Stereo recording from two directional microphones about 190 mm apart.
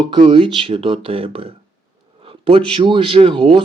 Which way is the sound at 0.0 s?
25° right (ahead or behind).